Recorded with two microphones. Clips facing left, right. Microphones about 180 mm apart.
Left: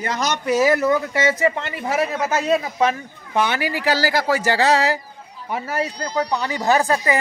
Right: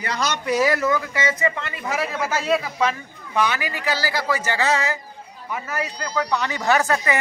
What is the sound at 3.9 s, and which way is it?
Speech, 40° left (ahead or behind).